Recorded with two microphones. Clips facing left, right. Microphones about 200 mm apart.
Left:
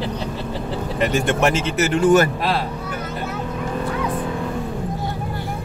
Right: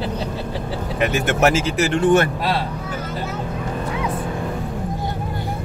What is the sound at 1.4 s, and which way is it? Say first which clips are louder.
Speech: right 1 dB; 5° right (ahead or behind).